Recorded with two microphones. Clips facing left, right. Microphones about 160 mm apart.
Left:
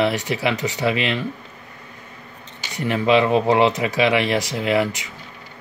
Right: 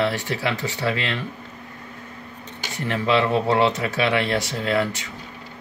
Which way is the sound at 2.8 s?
15° left (ahead or behind).